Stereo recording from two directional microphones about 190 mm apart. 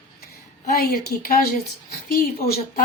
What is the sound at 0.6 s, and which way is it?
Speech, 50° left (ahead or behind).